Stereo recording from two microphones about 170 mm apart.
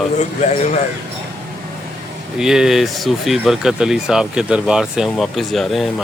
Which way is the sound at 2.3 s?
5° right (ahead or behind).